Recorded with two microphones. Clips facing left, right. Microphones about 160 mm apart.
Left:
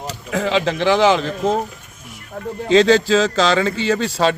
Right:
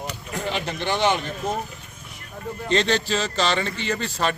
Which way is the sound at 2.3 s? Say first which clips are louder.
Left 9 dB; 80° left.